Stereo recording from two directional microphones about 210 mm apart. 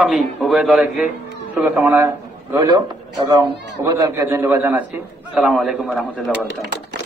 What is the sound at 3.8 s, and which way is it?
A man's voice, 15° right (ahead or behind).